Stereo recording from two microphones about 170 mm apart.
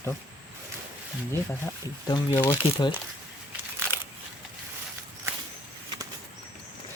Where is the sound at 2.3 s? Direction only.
15° left (ahead or behind).